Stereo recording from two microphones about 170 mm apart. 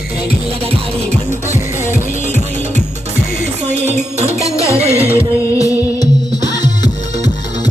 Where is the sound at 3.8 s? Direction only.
40° right (ahead or behind).